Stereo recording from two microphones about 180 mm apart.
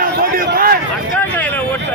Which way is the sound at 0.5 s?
55° right (ahead or behind).